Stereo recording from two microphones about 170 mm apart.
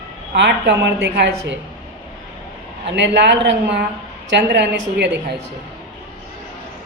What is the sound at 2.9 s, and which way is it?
Speech, 90° right.